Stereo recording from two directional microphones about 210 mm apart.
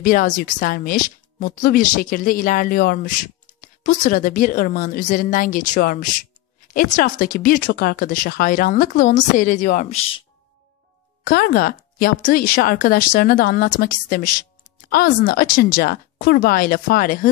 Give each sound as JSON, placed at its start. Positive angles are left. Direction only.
{"t": 0.0, "sound": "speech", "side_deg": 40}
{"t": 11.2, "sound": "speech", "side_deg": 45}